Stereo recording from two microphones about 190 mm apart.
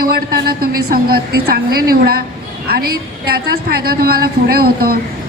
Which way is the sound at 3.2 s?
55° right (ahead or behind).